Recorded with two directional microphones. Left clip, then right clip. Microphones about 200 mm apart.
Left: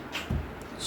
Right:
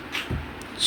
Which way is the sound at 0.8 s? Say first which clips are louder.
Right 14 dB; 5° left (ahead or behind).